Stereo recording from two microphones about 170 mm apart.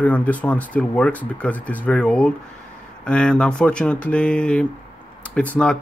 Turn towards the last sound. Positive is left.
turn(degrees=5)  # may be behind; listen again after turning